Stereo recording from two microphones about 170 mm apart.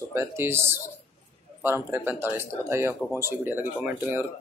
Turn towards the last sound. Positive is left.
turn(degrees=-10)  # may be behind; listen again after turning